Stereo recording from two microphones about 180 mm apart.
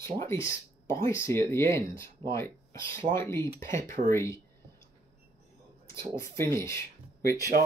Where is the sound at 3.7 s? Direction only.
45° right (ahead or behind).